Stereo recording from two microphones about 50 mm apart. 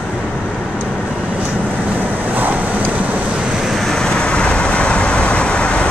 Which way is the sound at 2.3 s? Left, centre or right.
Right.